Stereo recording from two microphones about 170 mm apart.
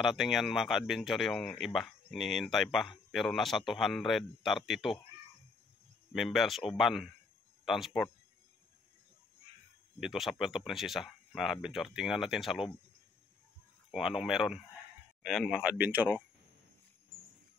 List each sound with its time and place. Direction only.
0.0 s speech: centre (ahead or behind)
6.1 s speech: centre (ahead or behind)
9.9 s speech: centre (ahead or behind)
13.9 s speech: 5° right (ahead or behind)